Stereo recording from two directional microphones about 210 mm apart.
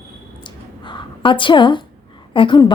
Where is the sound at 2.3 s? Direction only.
25° left (ahead or behind).